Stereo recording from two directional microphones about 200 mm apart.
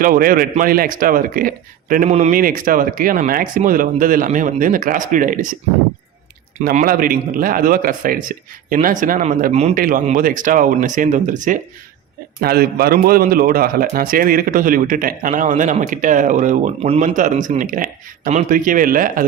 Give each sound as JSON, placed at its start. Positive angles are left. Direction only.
{"t": 0.0, "sound": "a man's voice", "side_deg": -45}
{"t": 6.6, "sound": "a man's voice", "side_deg": -40}
{"t": 12.4, "sound": "a man's voice", "side_deg": -50}